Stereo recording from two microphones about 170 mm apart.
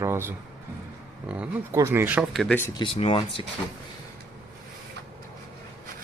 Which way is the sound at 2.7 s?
30° left (ahead or behind).